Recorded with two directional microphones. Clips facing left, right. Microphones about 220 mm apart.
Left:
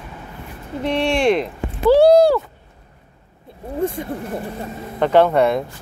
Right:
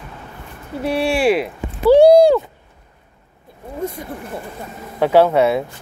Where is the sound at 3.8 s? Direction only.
30° left (ahead or behind).